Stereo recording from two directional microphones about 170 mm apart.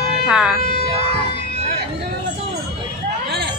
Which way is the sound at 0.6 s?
60° left (ahead or behind).